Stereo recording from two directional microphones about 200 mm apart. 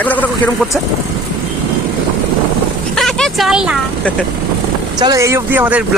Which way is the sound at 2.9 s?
Centre (ahead or behind).